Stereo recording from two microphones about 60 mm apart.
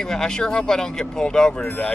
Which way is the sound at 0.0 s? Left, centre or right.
Centre.